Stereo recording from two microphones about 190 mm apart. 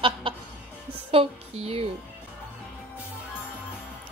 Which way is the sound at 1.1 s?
30° right (ahead or behind).